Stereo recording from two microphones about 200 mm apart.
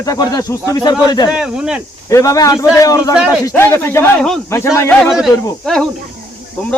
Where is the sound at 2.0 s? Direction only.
15° left (ahead or behind).